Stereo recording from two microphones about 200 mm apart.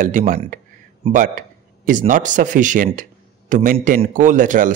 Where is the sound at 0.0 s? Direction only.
40° right (ahead or behind).